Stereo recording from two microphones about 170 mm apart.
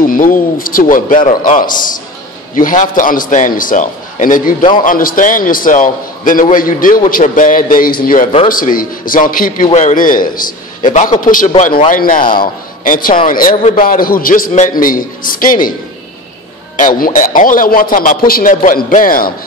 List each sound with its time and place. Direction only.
0.0 s a man's voice: 55° left (ahead or behind)
9.7 s a man's voice: 45° left (ahead or behind)
16.7 s a man's voice: 50° left (ahead or behind)